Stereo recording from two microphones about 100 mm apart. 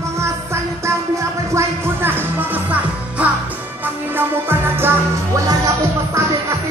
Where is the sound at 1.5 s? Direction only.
25° right (ahead or behind).